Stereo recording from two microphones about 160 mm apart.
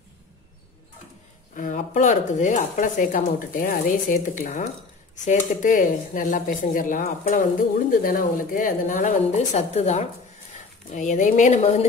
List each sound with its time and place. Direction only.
1.5 s a woman's voice: 55° left (ahead or behind)